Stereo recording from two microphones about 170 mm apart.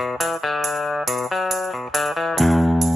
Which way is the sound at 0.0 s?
Centre (ahead or behind).